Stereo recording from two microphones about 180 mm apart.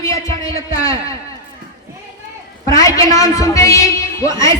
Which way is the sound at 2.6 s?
20° left (ahead or behind).